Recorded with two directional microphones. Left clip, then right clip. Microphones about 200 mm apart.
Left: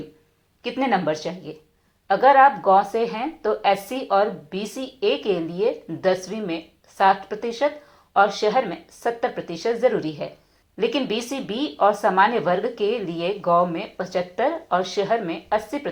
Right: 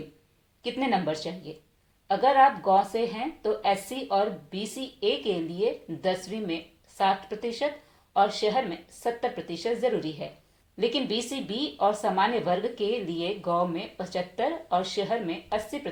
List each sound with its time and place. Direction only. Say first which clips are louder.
0.6 s speech: left 5 dB; 15° left (ahead or behind)